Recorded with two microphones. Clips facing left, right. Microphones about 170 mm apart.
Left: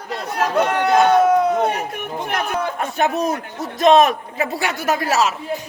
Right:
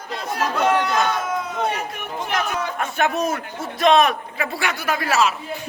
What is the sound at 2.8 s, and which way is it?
A man's voice, 35° left (ahead or behind).